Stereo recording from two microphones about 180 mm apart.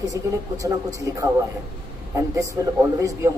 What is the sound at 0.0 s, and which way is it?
A man's voice, 20° right (ahead or behind).